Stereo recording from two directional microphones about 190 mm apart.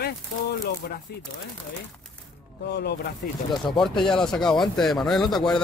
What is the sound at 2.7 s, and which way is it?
Speech, 60° left (ahead or behind).